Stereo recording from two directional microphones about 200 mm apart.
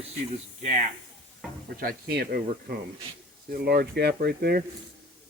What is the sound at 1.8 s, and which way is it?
Speech, 50° right (ahead or behind).